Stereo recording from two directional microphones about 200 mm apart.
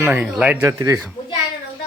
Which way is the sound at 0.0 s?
10° right (ahead or behind).